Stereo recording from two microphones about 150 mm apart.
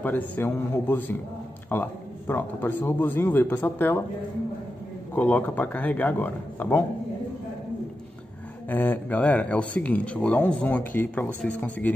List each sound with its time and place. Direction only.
0.0 s speech: 10° left (ahead or behind)
5.1 s speech: 10° left (ahead or behind)
8.6 s speech: 10° left (ahead or behind)